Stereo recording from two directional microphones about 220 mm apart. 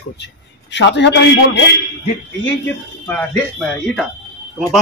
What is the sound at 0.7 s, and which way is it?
A man's voice, 55° left (ahead or behind).